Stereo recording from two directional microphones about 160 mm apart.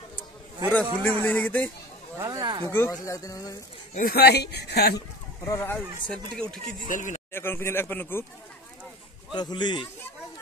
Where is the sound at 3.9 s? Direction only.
75° left (ahead or behind); by 5.0 s 90° left.